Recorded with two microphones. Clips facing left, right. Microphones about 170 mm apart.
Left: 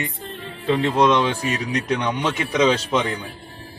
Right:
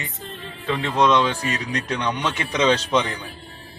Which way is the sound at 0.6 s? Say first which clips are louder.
Left 5 dB; 30° left (ahead or behind).